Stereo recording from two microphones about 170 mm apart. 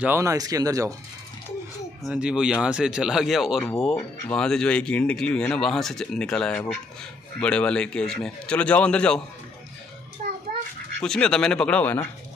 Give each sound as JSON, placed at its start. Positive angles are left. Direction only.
{"t": 0.0, "sound": "speech", "side_deg": -15}
{"t": 2.0, "sound": "speech", "side_deg": -5}
{"t": 10.2, "sound": "bathtub", "side_deg": -45}
{"t": 11.0, "sound": "speech", "side_deg": 5}